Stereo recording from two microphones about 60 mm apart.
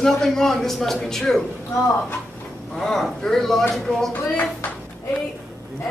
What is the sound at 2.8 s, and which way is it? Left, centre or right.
A woman's voice, centre.